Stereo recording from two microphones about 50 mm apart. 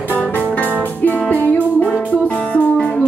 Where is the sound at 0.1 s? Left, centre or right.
Left.